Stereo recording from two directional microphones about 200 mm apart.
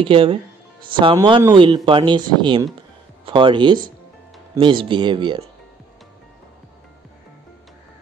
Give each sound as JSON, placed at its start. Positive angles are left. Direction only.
{"t": 0.0, "sound": "speech", "side_deg": -25}